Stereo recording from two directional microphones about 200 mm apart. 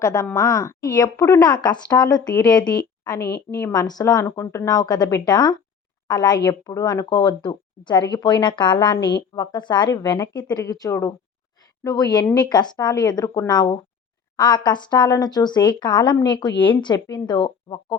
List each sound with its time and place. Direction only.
0.0 s a woman's voice: 15° left (ahead or behind)
3.3 s a woman's voice: 10° left (ahead or behind)